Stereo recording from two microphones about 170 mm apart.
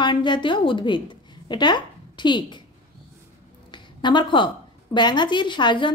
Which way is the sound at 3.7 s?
25° left (ahead or behind).